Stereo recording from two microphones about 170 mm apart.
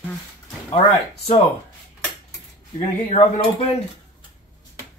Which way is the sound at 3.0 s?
35° left (ahead or behind).